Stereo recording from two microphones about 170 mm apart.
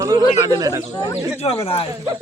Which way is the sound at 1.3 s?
35° left (ahead or behind).